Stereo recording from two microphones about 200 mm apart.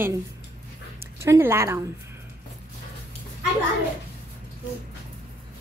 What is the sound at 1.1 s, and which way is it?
Speech, 15° right (ahead or behind).